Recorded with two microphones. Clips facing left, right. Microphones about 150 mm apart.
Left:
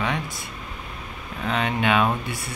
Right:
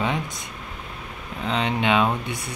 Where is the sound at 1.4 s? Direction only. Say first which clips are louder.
Even; 20° right (ahead or behind).